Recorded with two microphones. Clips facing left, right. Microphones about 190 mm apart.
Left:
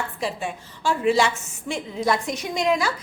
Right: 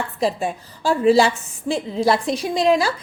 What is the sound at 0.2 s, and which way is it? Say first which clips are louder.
A woman's voice: right 10 dB; 40° right (ahead or behind).